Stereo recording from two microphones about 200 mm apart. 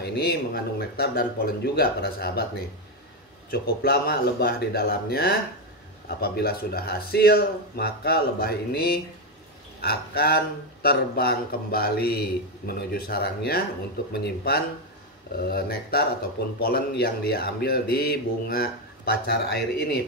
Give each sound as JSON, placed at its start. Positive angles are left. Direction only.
{"t": 0.0, "sound": "speech", "side_deg": 55}
{"t": 3.4, "sound": "speech", "side_deg": 50}